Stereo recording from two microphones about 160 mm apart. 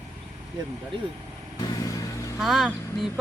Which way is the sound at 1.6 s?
20° left (ahead or behind).